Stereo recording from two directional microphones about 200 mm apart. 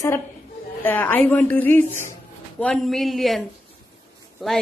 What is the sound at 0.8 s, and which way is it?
A woman's voice, 10° left (ahead or behind).